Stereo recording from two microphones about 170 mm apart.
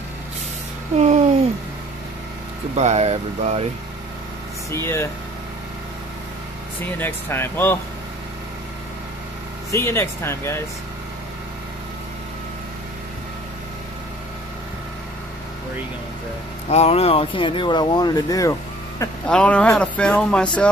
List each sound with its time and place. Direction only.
0.9 s speech: 40° right (ahead or behind)
2.7 s speech: 40° right (ahead or behind)
7.0 s speech: 15° left (ahead or behind)
9.7 s speech: 15° left (ahead or behind)
16.6 s speech: 40° left (ahead or behind); by 19.0 s 20° left (ahead or behind)
19.2 s speech: 5° left (ahead or behind)